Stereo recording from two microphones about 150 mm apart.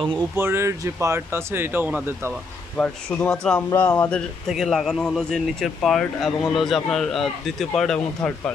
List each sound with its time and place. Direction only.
0.4 s speech: 15° right (ahead or behind)
2.8 s speech: 5° left (ahead or behind)